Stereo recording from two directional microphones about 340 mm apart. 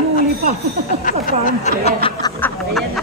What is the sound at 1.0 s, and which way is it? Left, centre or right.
Speech, left.